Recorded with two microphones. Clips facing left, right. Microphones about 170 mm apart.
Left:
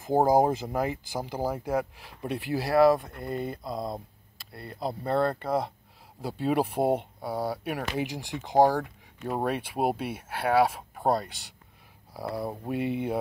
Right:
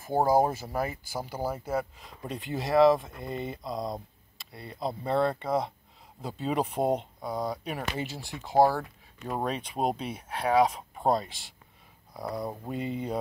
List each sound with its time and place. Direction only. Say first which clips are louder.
0.0 s speech: left 2 dB; 15° left (ahead or behind)
2.0 s speech: left 4 dB; 70° left (ahead or behind)
2.5 s speech: even; centre (ahead or behind)
12.7 s speech: left 5 dB; 70° left (ahead or behind)